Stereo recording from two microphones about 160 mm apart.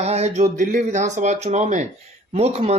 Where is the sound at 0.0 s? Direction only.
40° right (ahead or behind).